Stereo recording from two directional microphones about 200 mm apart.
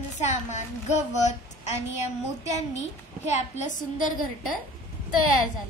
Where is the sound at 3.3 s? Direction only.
40° left (ahead or behind).